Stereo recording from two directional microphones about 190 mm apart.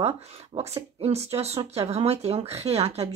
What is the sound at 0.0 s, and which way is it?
Speech, 35° right (ahead or behind).